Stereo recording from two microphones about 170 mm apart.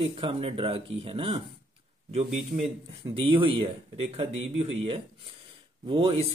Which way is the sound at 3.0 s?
30° right (ahead or behind).